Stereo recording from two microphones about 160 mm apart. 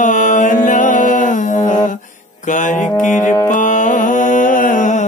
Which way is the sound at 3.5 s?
50° left (ahead or behind).